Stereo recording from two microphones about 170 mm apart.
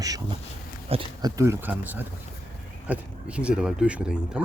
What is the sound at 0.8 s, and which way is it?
Speech, 35° right (ahead or behind).